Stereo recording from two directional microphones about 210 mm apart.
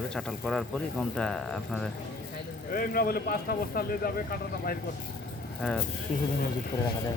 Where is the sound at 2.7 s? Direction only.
45° left (ahead or behind).